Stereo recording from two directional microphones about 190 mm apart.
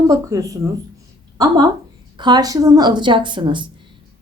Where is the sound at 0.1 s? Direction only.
15° right (ahead or behind).